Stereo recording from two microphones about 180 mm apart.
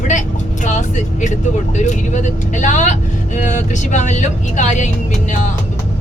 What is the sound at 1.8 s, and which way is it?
Speech, 40° left (ahead or behind).